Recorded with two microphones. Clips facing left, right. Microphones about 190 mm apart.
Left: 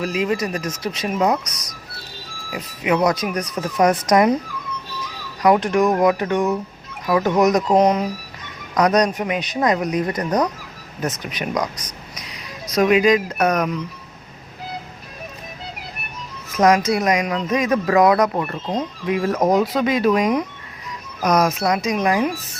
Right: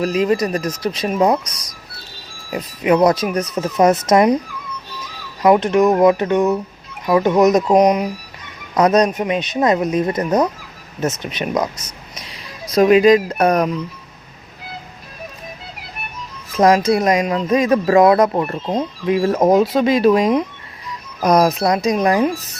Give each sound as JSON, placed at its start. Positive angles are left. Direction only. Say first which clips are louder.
{"t": 0.0, "sound": "speech", "louder": "right 5 dB", "side_deg": -40}
{"t": 5.4, "sound": "speech", "louder": "right 3 dB", "side_deg": -25}
{"t": 8.7, "sound": "speech", "louder": "right 3 dB", "side_deg": -25}
{"t": 16.6, "sound": "speech", "louder": "right 3 dB", "side_deg": -30}